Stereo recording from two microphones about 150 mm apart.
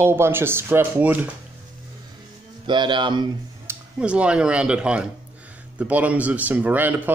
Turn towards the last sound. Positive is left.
turn(degrees=-10)  # may be behind; listen again after turning